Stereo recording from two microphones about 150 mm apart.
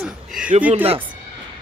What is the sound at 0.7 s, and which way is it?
Speech, 40° right (ahead or behind).